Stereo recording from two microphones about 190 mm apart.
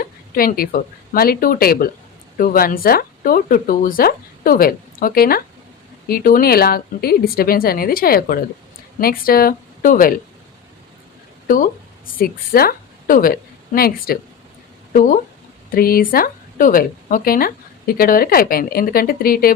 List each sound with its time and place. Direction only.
0.0 s a woman's voice: 50° left (ahead or behind)
11.4 s a woman's voice: 45° left (ahead or behind)